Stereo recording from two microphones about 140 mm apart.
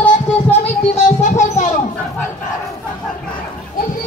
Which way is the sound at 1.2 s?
60° left (ahead or behind).